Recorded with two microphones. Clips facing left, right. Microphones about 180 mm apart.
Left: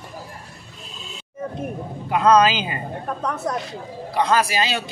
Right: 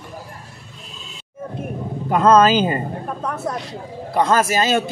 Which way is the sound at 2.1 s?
45° right (ahead or behind).